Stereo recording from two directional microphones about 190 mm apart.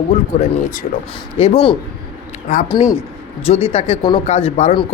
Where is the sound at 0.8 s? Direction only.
50° left (ahead or behind).